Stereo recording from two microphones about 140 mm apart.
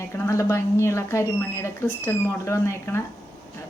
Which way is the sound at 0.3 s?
20° left (ahead or behind).